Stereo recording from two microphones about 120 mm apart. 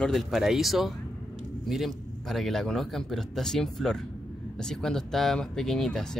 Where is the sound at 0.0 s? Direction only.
Centre (ahead or behind).